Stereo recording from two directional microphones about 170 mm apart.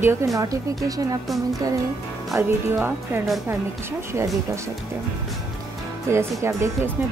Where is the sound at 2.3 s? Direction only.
15° right (ahead or behind).